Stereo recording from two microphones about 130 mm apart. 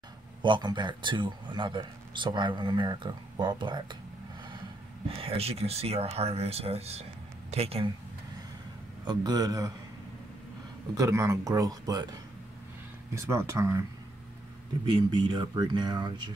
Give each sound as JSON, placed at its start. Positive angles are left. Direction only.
{"t": 0.4, "sound": "speech", "side_deg": -35}
{"t": 5.0, "sound": "speech", "side_deg": -45}
{"t": 9.0, "sound": "speech", "side_deg": -30}
{"t": 11.0, "sound": "speech", "side_deg": -20}
{"t": 13.1, "sound": "speech", "side_deg": -20}
{"t": 14.9, "sound": "speech", "side_deg": -35}